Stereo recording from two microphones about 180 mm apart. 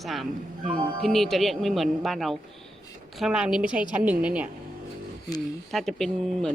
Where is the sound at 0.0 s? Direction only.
Centre (ahead or behind).